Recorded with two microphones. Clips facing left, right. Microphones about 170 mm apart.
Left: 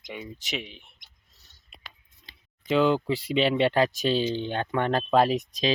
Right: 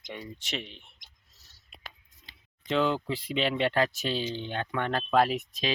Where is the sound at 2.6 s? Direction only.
10° left (ahead or behind).